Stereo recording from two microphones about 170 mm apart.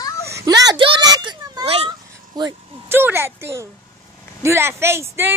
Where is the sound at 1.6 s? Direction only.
35° right (ahead or behind).